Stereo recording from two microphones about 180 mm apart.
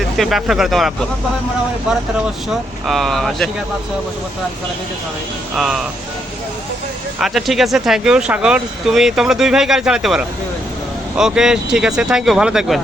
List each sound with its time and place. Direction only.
0.0 s speech: centre (ahead or behind)
5.5 s speech: centre (ahead or behind)
7.2 s speech: centre (ahead or behind)